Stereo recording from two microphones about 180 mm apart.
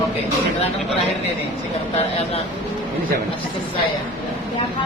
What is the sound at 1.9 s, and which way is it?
Speech, 35° left (ahead or behind).